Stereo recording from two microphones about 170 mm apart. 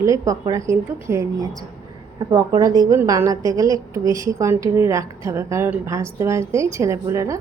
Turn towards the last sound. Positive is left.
turn(degrees=-15)  # may be behind; listen again after turning